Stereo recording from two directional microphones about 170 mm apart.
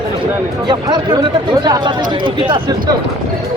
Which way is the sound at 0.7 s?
25° right (ahead or behind).